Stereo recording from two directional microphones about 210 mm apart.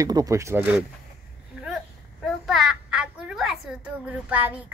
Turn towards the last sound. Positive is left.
turn(degrees=-5)  # may be behind; listen again after turning